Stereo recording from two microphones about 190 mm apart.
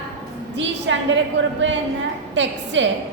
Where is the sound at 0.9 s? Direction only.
80° right.